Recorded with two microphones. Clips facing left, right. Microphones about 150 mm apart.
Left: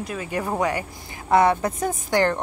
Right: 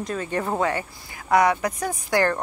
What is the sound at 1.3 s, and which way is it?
Speech, 25° left (ahead or behind).